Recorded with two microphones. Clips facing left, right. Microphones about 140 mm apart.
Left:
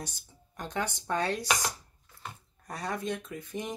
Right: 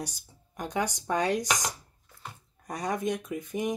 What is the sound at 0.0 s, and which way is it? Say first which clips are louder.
Speech: right 4 dB; 10° right (ahead or behind).